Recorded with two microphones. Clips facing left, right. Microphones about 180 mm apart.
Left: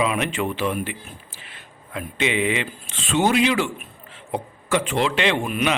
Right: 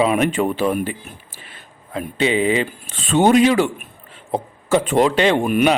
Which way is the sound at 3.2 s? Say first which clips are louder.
Right 6 dB; 50° right (ahead or behind).